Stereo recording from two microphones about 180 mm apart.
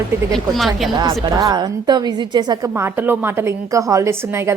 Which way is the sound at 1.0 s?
20° right (ahead or behind).